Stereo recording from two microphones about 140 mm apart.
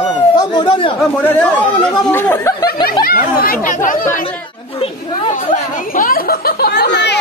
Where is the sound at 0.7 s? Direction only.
40° left (ahead or behind).